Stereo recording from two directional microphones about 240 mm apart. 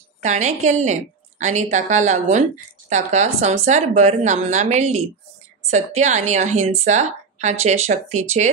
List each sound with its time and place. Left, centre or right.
0.2 s a woman's voice: right